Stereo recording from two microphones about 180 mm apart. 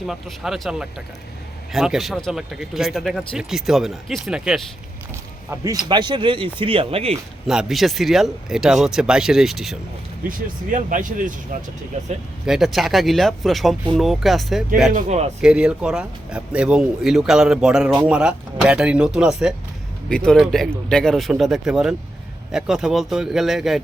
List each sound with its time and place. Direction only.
0.1 s speech: centre (ahead or behind)
5.9 s speech: 25° right (ahead or behind)
7.4 s speech: 5° right (ahead or behind)
10.2 s speech: 45° right (ahead or behind)
12.5 s speech: centre (ahead or behind)
14.9 s speech: 35° right (ahead or behind)
15.4 s speech: 5° right (ahead or behind)